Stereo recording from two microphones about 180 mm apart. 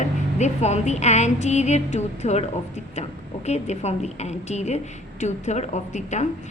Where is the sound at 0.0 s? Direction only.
40° left (ahead or behind).